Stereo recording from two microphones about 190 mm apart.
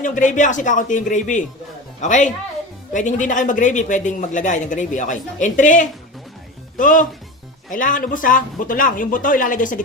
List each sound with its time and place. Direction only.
0.0 s speech: 40° left (ahead or behind)